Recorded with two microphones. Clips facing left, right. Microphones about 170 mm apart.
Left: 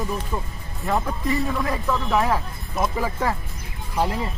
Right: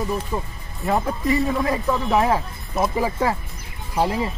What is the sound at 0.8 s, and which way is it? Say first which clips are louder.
Speech: right 2 dB; 20° right (ahead or behind).